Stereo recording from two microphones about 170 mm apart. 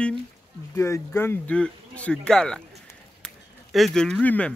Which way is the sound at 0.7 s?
15° left (ahead or behind).